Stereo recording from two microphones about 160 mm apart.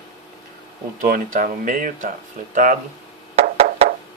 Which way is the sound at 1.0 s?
55° right (ahead or behind).